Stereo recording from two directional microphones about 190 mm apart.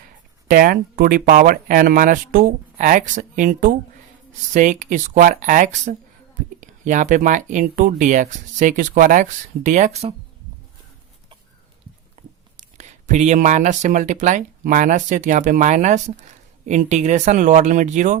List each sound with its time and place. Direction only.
0.4 s speech: 45° right (ahead or behind)
12.2 s chewing: 40° right (ahead or behind)
12.5 s speech: 40° right (ahead or behind)